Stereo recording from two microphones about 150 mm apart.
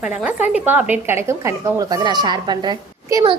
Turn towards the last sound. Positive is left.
turn(degrees=-30)  # may be behind; listen again after turning